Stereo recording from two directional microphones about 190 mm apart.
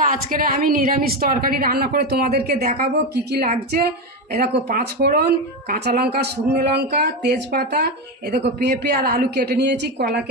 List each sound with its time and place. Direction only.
0.1 s a woman's voice: 45° right (ahead or behind)